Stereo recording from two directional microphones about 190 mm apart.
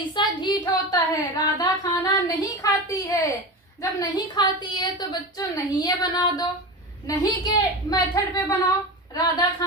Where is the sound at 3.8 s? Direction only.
20° left (ahead or behind).